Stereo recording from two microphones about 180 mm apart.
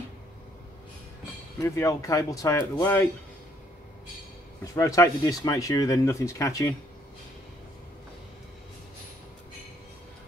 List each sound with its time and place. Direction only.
1.6 s speech: 15° left (ahead or behind)
4.7 s speech: 15° left (ahead or behind)